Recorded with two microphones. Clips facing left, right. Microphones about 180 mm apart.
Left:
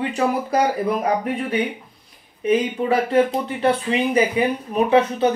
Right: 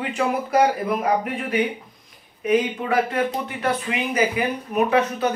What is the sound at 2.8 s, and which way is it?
Speech, 30° left (ahead or behind).